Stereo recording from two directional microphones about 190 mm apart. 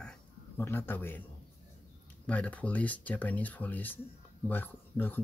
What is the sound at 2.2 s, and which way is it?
Speech, 5° left (ahead or behind).